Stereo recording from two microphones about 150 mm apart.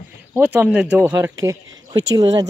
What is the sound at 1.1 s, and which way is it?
Speech, 25° right (ahead or behind).